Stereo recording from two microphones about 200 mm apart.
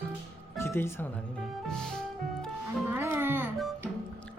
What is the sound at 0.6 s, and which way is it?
Speech, 10° left (ahead or behind).